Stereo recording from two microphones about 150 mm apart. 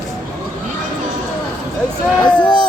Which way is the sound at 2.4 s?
30° left (ahead or behind).